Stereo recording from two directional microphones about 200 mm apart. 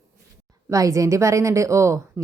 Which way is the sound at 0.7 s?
15° right (ahead or behind).